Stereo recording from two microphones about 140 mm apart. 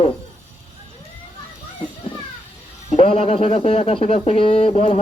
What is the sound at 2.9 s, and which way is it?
Speech, 45° left (ahead or behind).